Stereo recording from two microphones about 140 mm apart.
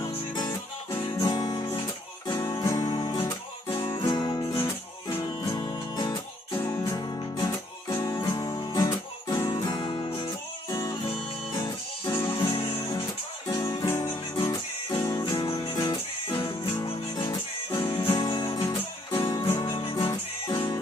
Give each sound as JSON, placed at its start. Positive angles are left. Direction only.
{"t": 0.3, "sound": "music", "side_deg": 30}
{"t": 13.5, "sound": "music", "side_deg": 25}
{"t": 15.3, "sound": "music", "side_deg": 35}
{"t": 16.6, "sound": "music", "side_deg": 20}
{"t": 17.2, "sound": "music", "side_deg": 35}